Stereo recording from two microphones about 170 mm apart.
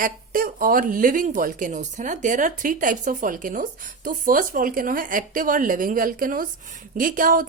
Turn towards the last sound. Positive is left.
turn(degrees=-55)  # may be behind; listen again after turning